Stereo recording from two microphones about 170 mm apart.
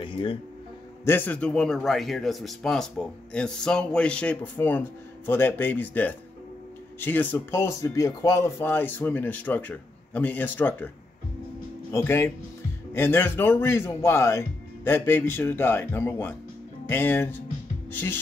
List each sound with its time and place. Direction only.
0.0 s music: 30° left (ahead or behind)
1.0 s a man's voice: 10° left (ahead or behind)
11.9 s speech: 15° left (ahead or behind)